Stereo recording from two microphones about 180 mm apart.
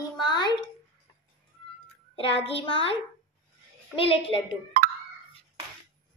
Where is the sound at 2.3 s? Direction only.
30° left (ahead or behind).